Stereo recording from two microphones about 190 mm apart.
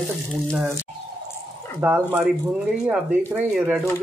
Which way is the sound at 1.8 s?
10° right (ahead or behind).